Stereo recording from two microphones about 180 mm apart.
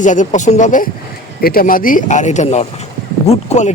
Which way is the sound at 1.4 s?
55° left (ahead or behind).